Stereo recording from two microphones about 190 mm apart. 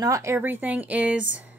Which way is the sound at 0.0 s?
15° right (ahead or behind).